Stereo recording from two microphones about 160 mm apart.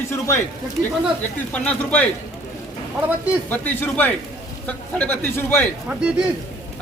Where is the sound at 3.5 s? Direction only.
10° left (ahead or behind).